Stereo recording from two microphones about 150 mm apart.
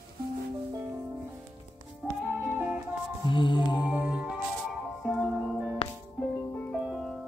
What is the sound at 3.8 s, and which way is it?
Music, 10° right (ahead or behind).